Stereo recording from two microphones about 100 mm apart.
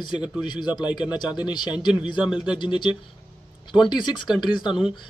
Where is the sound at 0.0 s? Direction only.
50° left (ahead or behind).